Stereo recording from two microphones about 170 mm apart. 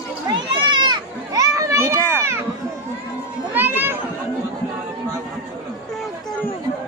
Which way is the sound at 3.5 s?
10° right (ahead or behind).